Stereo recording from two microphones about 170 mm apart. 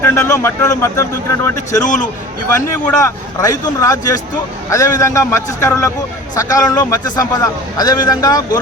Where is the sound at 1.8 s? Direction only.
45° left (ahead or behind).